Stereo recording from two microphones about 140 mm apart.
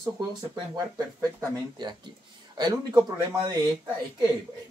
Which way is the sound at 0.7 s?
25° right (ahead or behind).